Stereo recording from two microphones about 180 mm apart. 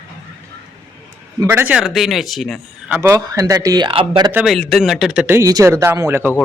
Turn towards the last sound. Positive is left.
turn(degrees=-15)  # may be behind; listen again after turning